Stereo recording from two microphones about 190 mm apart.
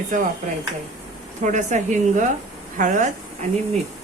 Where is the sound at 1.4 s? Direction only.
40° right (ahead or behind).